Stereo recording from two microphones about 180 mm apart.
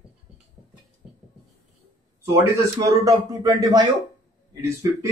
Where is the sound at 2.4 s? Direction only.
20° right (ahead or behind).